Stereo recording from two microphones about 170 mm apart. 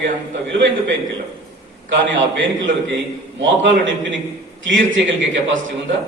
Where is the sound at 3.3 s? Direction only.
90° right.